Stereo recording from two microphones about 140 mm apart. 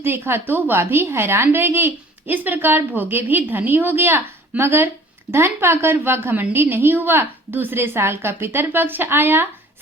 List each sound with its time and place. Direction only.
0.0 s a woman's voice: 15° right (ahead or behind)